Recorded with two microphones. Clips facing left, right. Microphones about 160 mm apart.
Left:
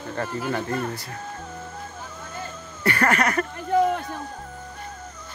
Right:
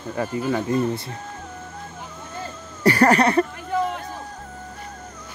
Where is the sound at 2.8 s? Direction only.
35° right (ahead or behind).